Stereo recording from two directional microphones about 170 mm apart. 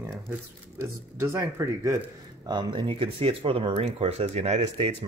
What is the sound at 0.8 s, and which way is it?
Speech, 15° right (ahead or behind).